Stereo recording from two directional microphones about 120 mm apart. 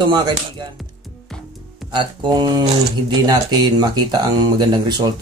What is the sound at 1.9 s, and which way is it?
Speech, 40° right (ahead or behind).